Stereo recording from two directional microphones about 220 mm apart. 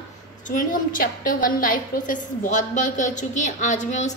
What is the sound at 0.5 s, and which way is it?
A woman's voice, 35° left (ahead or behind).